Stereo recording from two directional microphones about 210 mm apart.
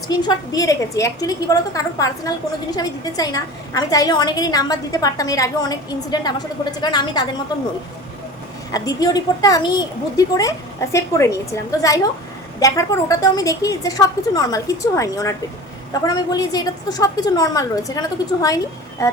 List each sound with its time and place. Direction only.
0.1 s a woman's voice: 20° left (ahead or behind)
8.7 s a woman's voice: 15° left (ahead or behind)